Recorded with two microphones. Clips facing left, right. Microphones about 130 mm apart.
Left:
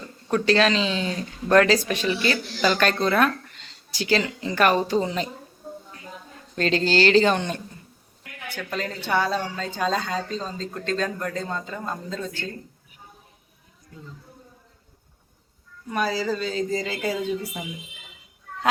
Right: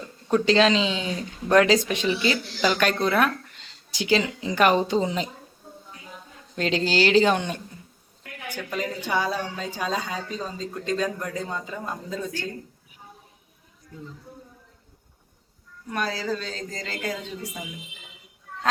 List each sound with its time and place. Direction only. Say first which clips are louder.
0.3 s a woman's voice: right 1 dB; 20° right (ahead or behind)
6.6 s a woman's voice: left 2 dB; 15° right (ahead or behind)
15.9 s speech: left 3 dB; 5° left (ahead or behind)